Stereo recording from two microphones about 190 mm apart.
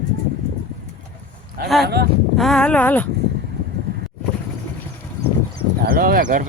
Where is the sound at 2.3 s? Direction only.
Centre (ahead or behind).